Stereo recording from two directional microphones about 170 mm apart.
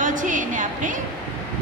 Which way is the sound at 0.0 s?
50° right (ahead or behind).